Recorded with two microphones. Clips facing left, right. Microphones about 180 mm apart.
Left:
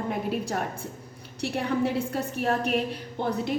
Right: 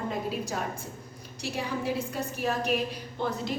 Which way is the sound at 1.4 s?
60° left (ahead or behind).